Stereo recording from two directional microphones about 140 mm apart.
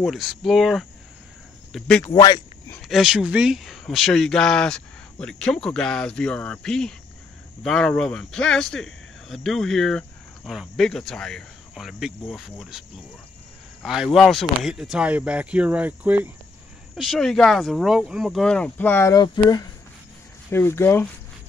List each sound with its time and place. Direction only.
0.0 s speech: centre (ahead or behind)
2.1 s a sound: 25° left (ahead or behind)
2.8 s speech: centre (ahead or behind)
13.8 s speech: 5° right (ahead or behind)
16.9 s speech: centre (ahead or behind)
19.1 s speech: 30° left (ahead or behind)
20.5 s speech: 15° left (ahead or behind)